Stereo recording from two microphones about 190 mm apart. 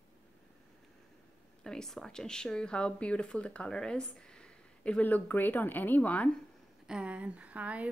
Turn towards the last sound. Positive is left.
turn(degrees=-5)  # may be behind; listen again after turning